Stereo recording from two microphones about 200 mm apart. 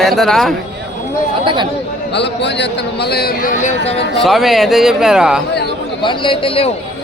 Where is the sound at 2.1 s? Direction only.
60° left (ahead or behind); by 3.9 s 35° left (ahead or behind).